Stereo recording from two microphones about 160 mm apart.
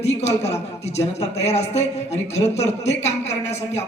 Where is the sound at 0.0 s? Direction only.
40° left (ahead or behind).